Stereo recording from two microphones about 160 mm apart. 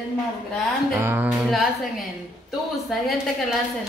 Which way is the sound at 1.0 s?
15° right (ahead or behind).